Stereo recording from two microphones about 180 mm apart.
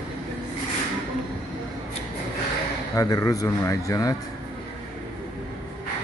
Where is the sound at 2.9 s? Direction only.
20° left (ahead or behind).